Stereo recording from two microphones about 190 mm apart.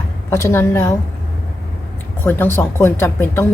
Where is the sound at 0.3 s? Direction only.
15° left (ahead or behind).